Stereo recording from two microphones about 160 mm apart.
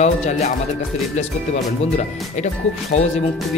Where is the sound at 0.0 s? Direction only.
45° left (ahead or behind).